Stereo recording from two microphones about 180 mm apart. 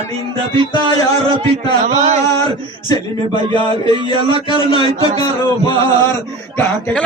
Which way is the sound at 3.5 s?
30° right (ahead or behind).